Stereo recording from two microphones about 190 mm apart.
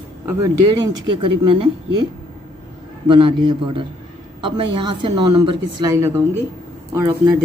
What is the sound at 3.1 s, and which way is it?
A woman's voice, 25° right (ahead or behind).